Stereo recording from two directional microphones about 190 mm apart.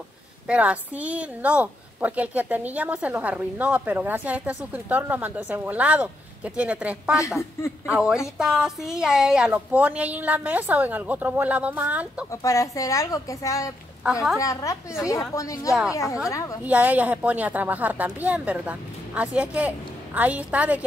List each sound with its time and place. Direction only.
0.5 s a woman's voice: 5° right (ahead or behind)
12.3 s speech: 15° left (ahead or behind)
16.6 s a woman's voice: 10° right (ahead or behind)